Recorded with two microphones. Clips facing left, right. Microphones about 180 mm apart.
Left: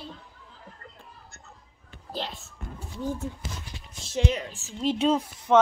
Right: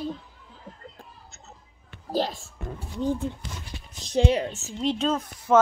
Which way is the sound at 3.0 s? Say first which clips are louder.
Right 5 dB; 20° right (ahead or behind).